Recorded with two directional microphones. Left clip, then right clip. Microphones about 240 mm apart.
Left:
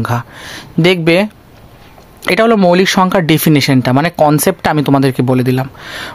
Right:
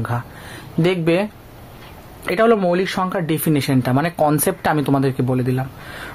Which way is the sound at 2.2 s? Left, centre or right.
Left.